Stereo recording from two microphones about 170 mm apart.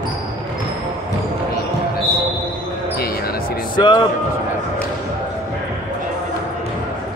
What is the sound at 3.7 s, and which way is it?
Speech, 25° left (ahead or behind).